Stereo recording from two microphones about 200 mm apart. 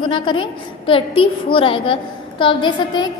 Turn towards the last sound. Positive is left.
turn(degrees=25)  # may be behind; listen again after turning